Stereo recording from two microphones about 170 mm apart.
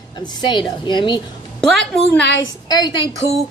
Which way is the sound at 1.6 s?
5° left (ahead or behind).